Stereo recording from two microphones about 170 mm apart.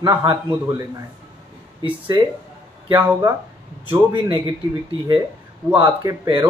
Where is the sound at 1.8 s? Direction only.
30° right (ahead or behind).